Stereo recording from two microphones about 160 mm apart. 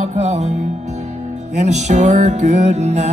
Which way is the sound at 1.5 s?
45° right (ahead or behind).